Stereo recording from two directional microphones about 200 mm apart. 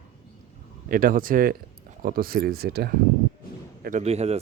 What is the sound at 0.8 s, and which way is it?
Speech, 45° right (ahead or behind).